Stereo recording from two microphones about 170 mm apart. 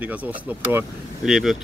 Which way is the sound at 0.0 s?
10° right (ahead or behind).